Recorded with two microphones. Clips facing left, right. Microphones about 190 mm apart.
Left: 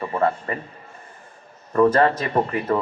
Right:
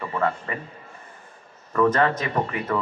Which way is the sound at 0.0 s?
35° left (ahead or behind).